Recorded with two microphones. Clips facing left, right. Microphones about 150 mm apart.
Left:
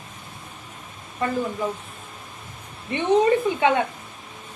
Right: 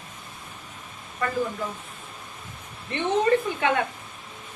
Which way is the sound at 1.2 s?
20° left (ahead or behind).